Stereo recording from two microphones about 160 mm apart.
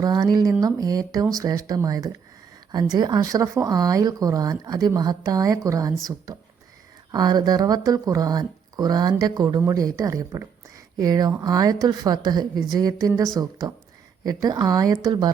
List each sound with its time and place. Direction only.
0.0 s speech: 25° right (ahead or behind)
7.1 s speech: 25° right (ahead or behind)